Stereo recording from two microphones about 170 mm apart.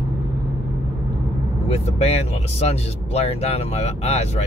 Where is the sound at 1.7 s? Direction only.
35° left (ahead or behind).